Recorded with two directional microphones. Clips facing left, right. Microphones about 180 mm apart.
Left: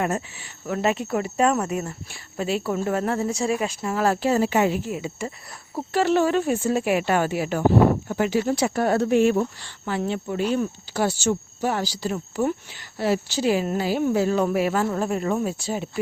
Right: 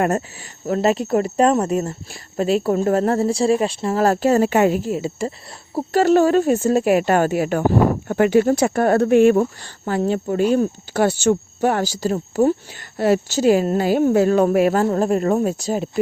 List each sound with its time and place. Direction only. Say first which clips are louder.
0.0 s speech: right 6 dB; 45° right (ahead or behind)
4.8 s speech: right 6 dB; 35° right (ahead or behind)
10.9 s speech: right 6 dB; 55° right (ahead or behind); by 15.9 s 40° right (ahead or behind)